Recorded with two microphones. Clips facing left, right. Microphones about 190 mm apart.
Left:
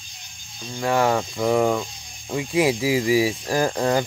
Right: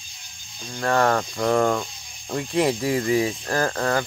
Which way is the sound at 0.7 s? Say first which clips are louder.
Even; 5° left (ahead or behind).